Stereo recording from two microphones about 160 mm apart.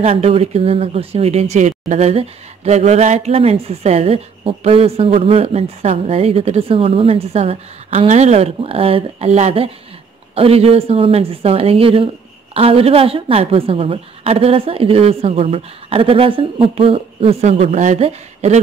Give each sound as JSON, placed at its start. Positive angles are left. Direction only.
{"t": 0.0, "sound": "speech", "side_deg": -40}